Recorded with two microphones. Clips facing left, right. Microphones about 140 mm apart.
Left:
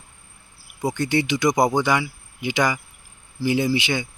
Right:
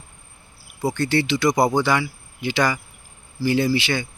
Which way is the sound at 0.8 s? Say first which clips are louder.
Right 1 dB; 15° left (ahead or behind).